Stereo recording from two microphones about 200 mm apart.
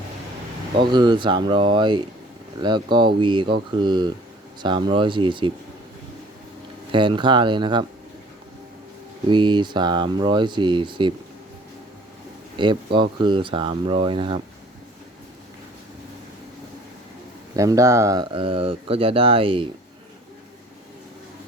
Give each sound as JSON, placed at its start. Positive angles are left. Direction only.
{"t": 0.8, "sound": "speech", "side_deg": -20}
{"t": 6.9, "sound": "speech", "side_deg": -25}
{"t": 9.3, "sound": "speech", "side_deg": -25}
{"t": 12.5, "sound": "speech", "side_deg": -25}
{"t": 17.6, "sound": "speech", "side_deg": -15}